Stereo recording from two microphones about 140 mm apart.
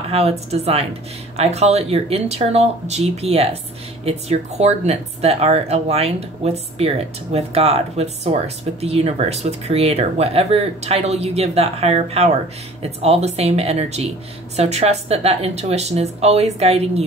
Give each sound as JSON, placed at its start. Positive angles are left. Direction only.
{"t": 0.1, "sound": "speech", "side_deg": -45}